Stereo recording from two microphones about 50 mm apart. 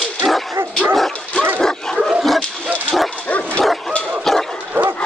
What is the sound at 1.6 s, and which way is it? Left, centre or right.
Bow-wow, centre.